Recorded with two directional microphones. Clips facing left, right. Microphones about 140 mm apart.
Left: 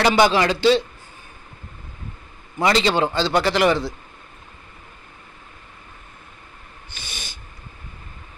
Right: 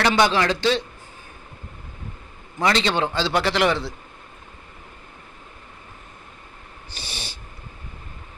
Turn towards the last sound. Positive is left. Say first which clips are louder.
# right 2 dB
turn(degrees=-35)  # may be behind; listen again after turning